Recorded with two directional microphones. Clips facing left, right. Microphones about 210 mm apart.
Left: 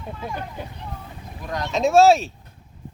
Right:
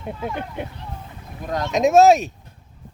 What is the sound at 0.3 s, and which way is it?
Speech, 20° right (ahead or behind).